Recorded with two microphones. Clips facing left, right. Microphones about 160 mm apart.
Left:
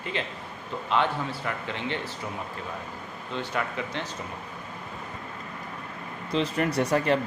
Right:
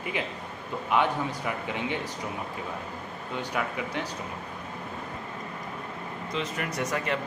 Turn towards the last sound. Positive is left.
turn(degrees=35)  # may be behind; listen again after turning